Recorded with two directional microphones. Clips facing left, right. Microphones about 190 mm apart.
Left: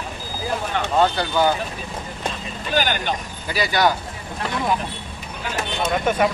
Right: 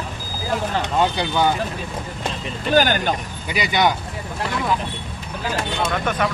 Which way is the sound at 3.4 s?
20° right (ahead or behind).